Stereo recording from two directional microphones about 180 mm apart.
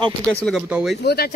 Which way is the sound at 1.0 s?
65° left (ahead or behind).